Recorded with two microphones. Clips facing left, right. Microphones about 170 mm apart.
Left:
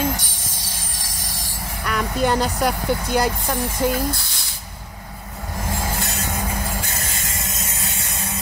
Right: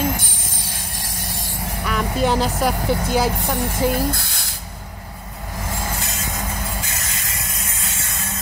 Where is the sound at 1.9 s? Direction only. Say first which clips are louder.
Even; centre (ahead or behind).